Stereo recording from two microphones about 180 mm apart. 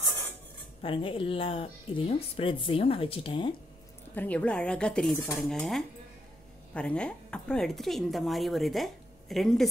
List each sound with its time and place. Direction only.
0.8 s speech: 30° left (ahead or behind)
4.1 s speech: 10° left (ahead or behind)